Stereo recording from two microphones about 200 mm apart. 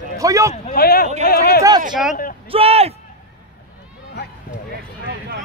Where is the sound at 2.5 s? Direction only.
30° right (ahead or behind).